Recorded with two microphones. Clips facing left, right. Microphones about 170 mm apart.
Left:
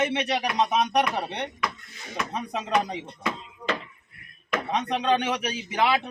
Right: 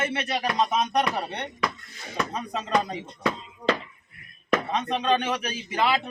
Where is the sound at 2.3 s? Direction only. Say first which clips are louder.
Left 1 dB; 15° left (ahead or behind).